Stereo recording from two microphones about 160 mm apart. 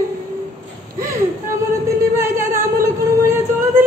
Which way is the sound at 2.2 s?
15° right (ahead or behind).